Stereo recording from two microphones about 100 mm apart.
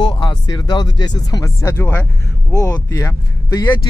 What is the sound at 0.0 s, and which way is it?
Speech, 55° left (ahead or behind).